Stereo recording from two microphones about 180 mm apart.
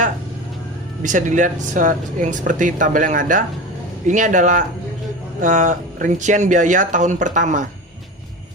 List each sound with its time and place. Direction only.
1.0 s speech: 45° right (ahead or behind)